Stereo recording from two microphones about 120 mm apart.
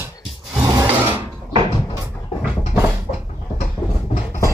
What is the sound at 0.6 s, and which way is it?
Rub, 30° right (ahead or behind).